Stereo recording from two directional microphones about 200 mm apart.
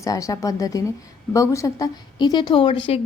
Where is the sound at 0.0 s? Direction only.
15° left (ahead or behind).